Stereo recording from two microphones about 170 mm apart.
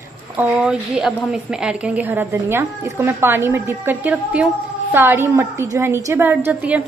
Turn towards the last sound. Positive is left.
turn(degrees=-10)  # may be behind; listen again after turning